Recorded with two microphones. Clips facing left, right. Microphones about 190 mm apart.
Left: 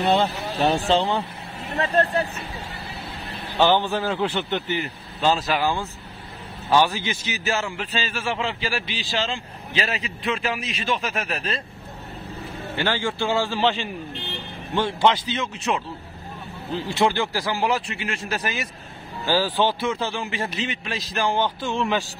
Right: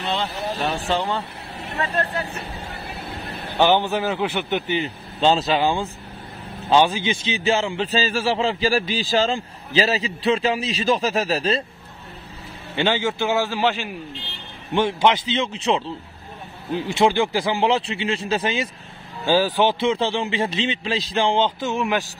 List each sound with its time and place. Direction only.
0.0 s speech: 45° left (ahead or behind)
0.7 s speech: 25° left (ahead or behind)
1.8 s speech: 35° left (ahead or behind)
3.5 s a man's voice: 15° right (ahead or behind)
12.7 s a man's voice: 20° right (ahead or behind)
14.7 s a man's voice: 20° right (ahead or behind)
16.7 s a man's voice: 20° right (ahead or behind)